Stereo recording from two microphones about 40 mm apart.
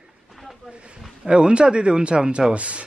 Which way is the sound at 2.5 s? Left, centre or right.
Right.